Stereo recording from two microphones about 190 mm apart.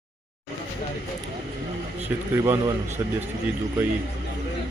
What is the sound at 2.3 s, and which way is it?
Speech, 15° right (ahead or behind).